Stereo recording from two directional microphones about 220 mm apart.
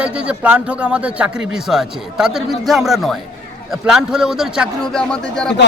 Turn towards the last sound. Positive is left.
turn(degrees=5)  # may be behind; listen again after turning